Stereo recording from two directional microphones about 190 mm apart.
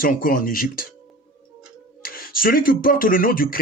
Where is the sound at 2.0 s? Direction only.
50° left (ahead or behind).